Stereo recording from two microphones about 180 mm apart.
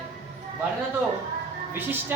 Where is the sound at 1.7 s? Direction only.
10° right (ahead or behind).